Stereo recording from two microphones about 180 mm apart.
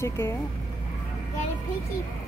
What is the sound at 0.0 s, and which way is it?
Speech, 15° left (ahead or behind).